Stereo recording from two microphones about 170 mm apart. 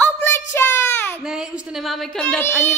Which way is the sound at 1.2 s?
5° right (ahead or behind).